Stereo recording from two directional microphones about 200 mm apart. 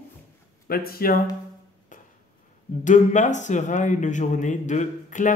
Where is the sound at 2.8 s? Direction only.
40° left (ahead or behind).